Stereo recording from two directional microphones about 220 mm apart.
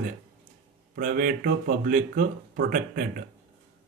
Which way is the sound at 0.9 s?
40° right (ahead or behind).